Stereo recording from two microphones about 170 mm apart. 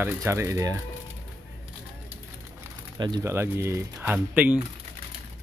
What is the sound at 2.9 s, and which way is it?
Speech, 25° right (ahead or behind).